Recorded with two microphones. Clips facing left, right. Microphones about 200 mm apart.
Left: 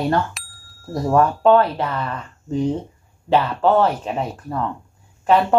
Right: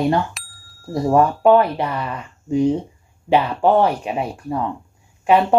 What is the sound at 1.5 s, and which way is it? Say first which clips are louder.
Speech: right 1 dB; 15° right (ahead or behind).